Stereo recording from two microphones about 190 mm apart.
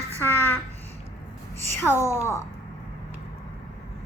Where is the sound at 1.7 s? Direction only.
15° left (ahead or behind).